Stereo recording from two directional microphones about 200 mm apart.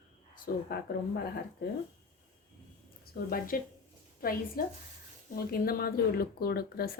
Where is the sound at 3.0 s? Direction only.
45° left (ahead or behind).